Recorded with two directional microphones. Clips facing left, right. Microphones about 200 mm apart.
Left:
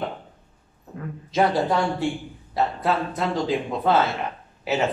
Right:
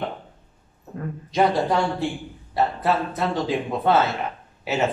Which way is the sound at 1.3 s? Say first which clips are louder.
Right 1 dB; centre (ahead or behind).